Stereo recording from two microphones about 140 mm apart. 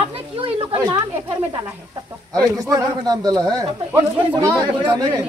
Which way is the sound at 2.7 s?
30° right (ahead or behind).